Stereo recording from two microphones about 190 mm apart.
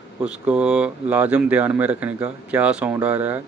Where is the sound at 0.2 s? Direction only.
5° right (ahead or behind).